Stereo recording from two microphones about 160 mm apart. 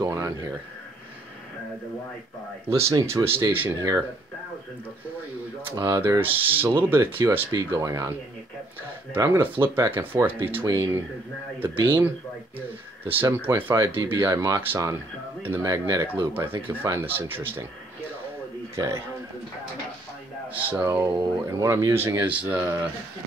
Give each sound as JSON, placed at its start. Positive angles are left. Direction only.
{"t": 0.0, "sound": "speech", "side_deg": -20}
{"t": 2.7, "sound": "speech", "side_deg": -20}
{"t": 5.8, "sound": "speech", "side_deg": -15}
{"t": 18.8, "sound": "speech", "side_deg": -15}
{"t": 20.7, "sound": "speech", "side_deg": -15}